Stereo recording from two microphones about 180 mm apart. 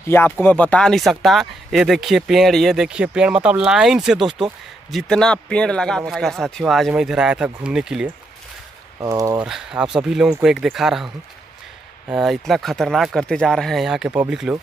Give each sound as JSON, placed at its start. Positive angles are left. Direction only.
{"t": 0.0, "sound": "speech", "side_deg": 10}
{"t": 9.0, "sound": "speech", "side_deg": -20}
{"t": 9.4, "sound": "speech", "side_deg": -5}
{"t": 12.1, "sound": "speech", "side_deg": 0}